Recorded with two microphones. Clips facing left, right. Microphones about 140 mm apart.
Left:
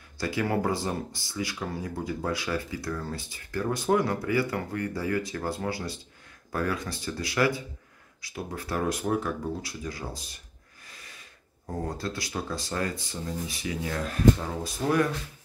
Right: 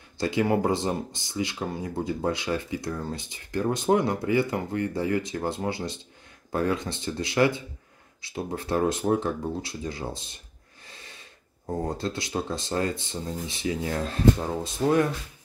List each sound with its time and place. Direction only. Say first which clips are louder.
0.2 s speech: right 4 dB; 20° right (ahead or behind)
10.9 s snort: right 3 dB; 25° right (ahead or behind)
11.6 s speech: right 4 dB; 20° right (ahead or behind)